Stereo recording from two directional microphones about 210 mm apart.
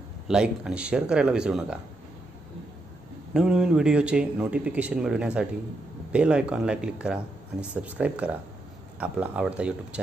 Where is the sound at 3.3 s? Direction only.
5° right (ahead or behind).